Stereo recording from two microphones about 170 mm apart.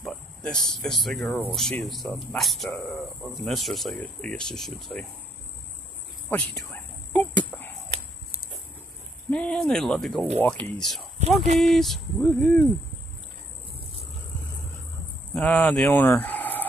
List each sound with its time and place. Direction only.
0.0 s speech: 5° left (ahead or behind)
6.3 s speech: 5° left (ahead or behind)
7.1 s cricket: 10° left (ahead or behind)
9.3 s speech: 5° left (ahead or behind)
11.4 s speech: 40° right (ahead or behind)
11.7 s speech: centre (ahead or behind)
15.3 s speech: 10° left (ahead or behind)